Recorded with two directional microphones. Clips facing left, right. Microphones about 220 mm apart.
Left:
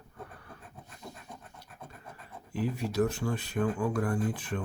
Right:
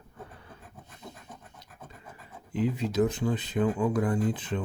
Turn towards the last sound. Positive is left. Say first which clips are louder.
# right 3 dB
turn(degrees=-20)  # may be behind; listen again after turning